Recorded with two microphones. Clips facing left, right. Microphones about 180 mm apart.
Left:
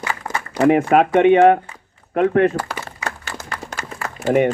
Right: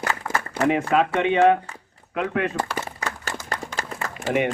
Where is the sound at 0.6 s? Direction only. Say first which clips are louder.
Left 7 dB; 55° left (ahead or behind).